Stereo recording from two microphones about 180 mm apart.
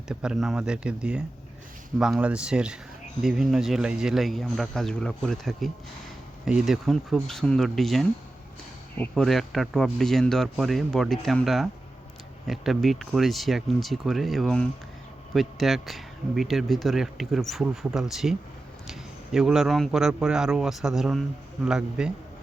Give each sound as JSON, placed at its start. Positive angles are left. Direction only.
{"t": 0.1, "sound": "speech", "side_deg": -5}